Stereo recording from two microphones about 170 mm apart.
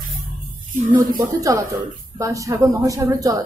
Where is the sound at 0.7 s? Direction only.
55° right (ahead or behind).